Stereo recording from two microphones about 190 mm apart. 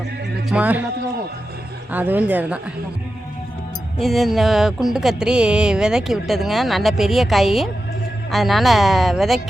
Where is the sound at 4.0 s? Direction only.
Centre (ahead or behind).